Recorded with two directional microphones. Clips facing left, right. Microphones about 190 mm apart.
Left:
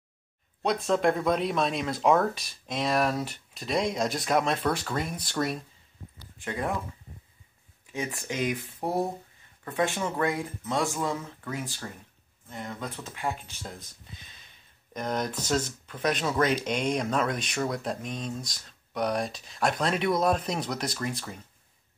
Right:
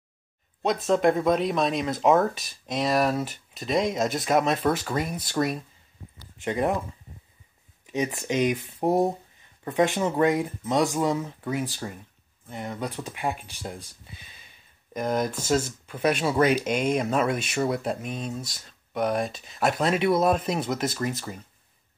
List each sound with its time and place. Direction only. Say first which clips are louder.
0.8 s speech: right 4 dB; centre (ahead or behind)
6.3 s speech: right 6 dB; 20° right (ahead or behind)
7.8 s speech: right 6 dB; 20° right (ahead or behind)
14.1 s a sound: right 1 dB; 10° right (ahead or behind)
15.0 s speech: right 4 dB; 5° right (ahead or behind)